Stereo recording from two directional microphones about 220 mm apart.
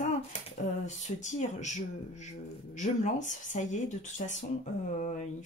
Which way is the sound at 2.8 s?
35° left (ahead or behind).